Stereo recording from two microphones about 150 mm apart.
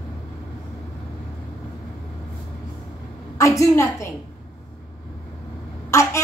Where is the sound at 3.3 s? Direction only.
20° left (ahead or behind).